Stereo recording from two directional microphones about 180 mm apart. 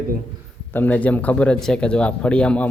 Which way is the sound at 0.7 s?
10° left (ahead or behind).